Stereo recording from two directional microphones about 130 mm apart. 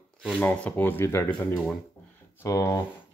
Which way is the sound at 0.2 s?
10° left (ahead or behind).